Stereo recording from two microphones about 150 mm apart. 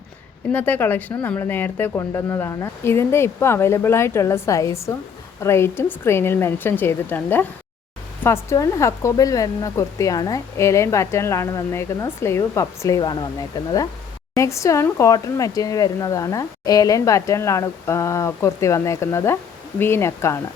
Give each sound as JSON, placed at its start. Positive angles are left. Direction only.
{"t": 0.5, "sound": "speech", "side_deg": 10}
{"t": 14.3, "sound": "speech", "side_deg": 20}